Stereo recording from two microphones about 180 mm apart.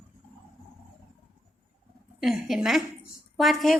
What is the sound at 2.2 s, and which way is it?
A woman's voice, centre (ahead or behind).